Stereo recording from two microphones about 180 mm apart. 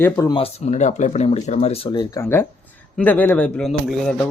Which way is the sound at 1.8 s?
20° left (ahead or behind).